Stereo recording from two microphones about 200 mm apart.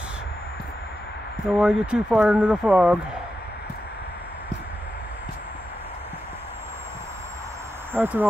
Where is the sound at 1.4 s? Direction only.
5° right (ahead or behind).